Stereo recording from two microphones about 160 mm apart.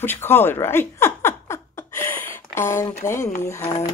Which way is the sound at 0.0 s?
15° left (ahead or behind).